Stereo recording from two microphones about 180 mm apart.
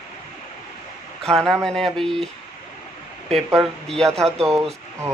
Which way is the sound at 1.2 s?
Centre (ahead or behind).